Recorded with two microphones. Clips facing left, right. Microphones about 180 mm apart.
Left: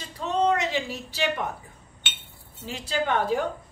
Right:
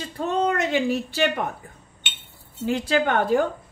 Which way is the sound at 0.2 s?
55° right (ahead or behind).